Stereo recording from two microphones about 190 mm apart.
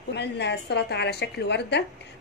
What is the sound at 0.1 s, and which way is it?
A woman's voice, 65° left (ahead or behind).